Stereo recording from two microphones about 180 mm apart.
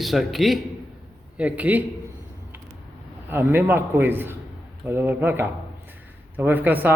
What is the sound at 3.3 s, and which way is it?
A man's voice, 10° right (ahead or behind).